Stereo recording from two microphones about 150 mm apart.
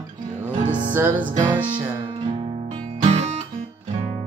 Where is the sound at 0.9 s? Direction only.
15° right (ahead or behind).